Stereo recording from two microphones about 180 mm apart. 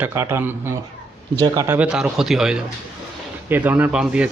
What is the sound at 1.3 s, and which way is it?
Speech, 25° right (ahead or behind).